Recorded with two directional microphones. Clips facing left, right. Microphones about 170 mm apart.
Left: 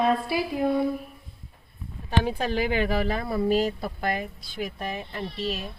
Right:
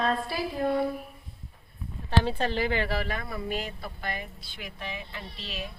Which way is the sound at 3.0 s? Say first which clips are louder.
Left 8 dB; 30° left (ahead or behind).